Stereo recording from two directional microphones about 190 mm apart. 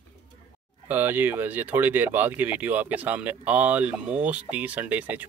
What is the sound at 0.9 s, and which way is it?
Speech, 10° right (ahead or behind).